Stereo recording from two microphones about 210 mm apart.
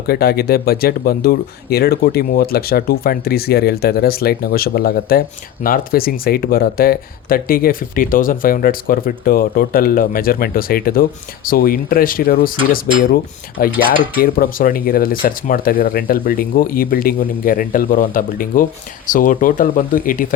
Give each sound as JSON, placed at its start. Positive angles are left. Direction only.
{"t": 0.1, "sound": "speech", "side_deg": 45}